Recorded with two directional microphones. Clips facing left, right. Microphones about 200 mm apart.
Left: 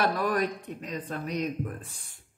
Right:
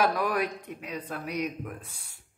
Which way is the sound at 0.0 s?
10° right (ahead or behind).